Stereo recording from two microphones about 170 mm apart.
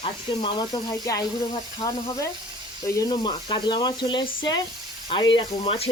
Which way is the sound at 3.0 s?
25° left (ahead or behind).